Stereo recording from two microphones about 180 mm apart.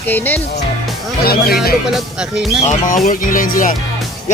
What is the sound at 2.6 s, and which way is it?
Speech, 45° left (ahead or behind).